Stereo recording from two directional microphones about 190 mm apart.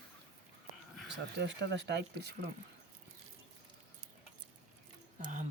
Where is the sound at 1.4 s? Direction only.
65° right (ahead or behind).